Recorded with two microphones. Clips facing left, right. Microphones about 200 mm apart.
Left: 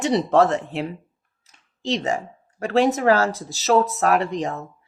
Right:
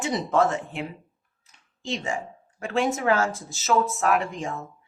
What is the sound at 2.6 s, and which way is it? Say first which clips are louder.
Speech: left 6 dB; 35° left (ahead or behind).